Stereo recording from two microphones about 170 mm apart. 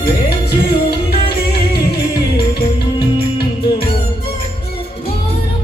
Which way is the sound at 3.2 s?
30° left (ahead or behind).